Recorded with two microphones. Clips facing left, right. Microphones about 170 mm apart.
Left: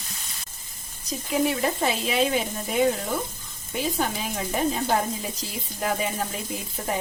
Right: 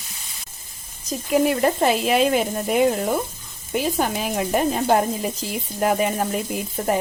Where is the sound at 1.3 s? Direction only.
55° right (ahead or behind).